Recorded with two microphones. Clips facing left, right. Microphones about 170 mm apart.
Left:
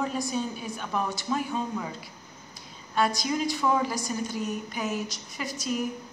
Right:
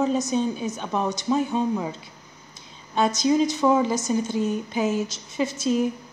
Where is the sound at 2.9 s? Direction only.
20° right (ahead or behind).